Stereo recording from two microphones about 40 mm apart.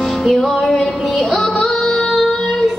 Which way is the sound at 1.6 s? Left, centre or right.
Centre.